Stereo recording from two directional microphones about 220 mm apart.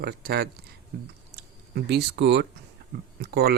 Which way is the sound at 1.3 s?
50° right (ahead or behind).